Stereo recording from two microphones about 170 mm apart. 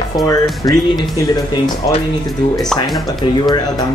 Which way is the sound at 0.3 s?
20° left (ahead or behind).